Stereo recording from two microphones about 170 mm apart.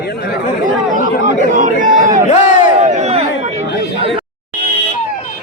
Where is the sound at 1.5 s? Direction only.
50° right (ahead or behind).